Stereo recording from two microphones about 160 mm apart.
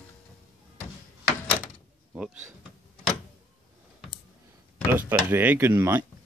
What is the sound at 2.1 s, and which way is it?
Door, 5° right (ahead or behind).